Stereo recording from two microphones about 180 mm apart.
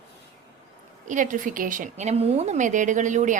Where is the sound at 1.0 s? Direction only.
45° right (ahead or behind).